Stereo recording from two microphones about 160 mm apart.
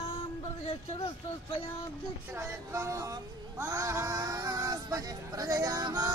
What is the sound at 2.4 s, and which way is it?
Speech, 20° right (ahead or behind).